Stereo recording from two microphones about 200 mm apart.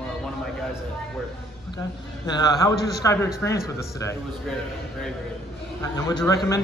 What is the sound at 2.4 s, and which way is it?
A man's voice, 15° left (ahead or behind).